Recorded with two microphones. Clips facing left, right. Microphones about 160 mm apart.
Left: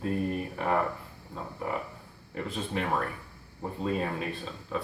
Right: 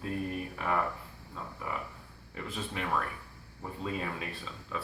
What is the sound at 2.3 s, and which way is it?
Speech, 40° left (ahead or behind).